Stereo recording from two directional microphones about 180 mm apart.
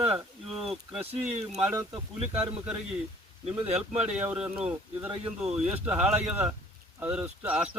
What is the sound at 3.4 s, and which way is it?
Speech, 35° right (ahead or behind).